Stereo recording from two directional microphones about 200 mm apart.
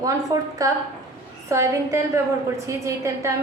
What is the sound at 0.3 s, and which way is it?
A woman's voice, 15° right (ahead or behind).